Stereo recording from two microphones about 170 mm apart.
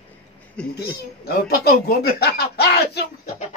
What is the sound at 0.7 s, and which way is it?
Speech, 70° left (ahead or behind).